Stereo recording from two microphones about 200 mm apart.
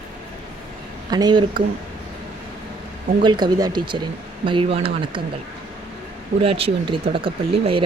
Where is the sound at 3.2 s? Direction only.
20° right (ahead or behind).